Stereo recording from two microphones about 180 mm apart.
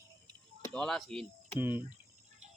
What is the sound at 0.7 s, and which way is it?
Speech, 5° left (ahead or behind).